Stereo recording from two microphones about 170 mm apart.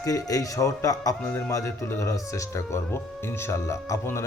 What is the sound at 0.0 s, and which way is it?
A man's voice, 20° left (ahead or behind).